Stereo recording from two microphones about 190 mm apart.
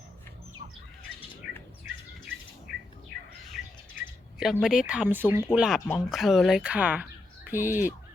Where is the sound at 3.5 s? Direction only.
Centre (ahead or behind).